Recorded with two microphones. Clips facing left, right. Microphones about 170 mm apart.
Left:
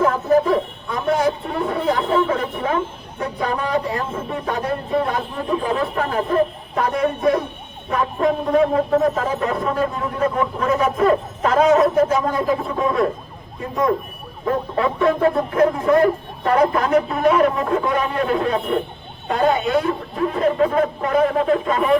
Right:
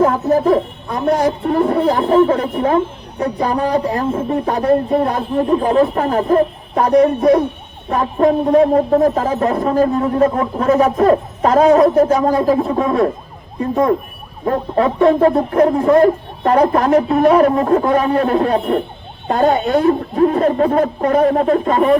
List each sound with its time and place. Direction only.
0.0 s a sound: 45° right (ahead or behind)
1.5 s speech: 40° right (ahead or behind)
14.4 s speech: 40° right (ahead or behind)